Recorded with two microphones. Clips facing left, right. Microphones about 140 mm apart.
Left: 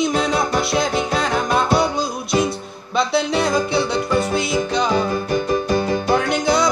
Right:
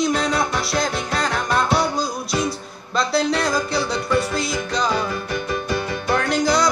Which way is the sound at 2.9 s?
Centre (ahead or behind).